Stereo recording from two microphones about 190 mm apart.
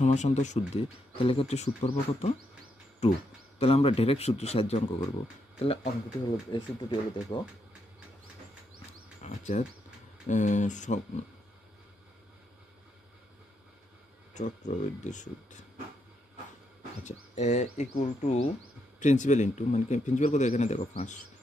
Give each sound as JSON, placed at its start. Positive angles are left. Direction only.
{"t": 0.0, "sound": "speech", "side_deg": 35}
{"t": 5.8, "sound": "speech", "side_deg": -5}
{"t": 6.5, "sound": "speech", "side_deg": 25}
{"t": 9.2, "sound": "insect", "side_deg": 40}
{"t": 10.2, "sound": "speech", "side_deg": 40}
{"t": 14.3, "sound": "speech", "side_deg": 40}
{"t": 17.0, "sound": "speech", "side_deg": 35}